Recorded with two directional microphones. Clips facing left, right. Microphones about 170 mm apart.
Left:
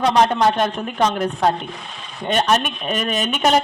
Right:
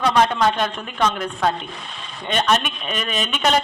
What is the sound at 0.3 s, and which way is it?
A man's voice, 40° left (ahead or behind).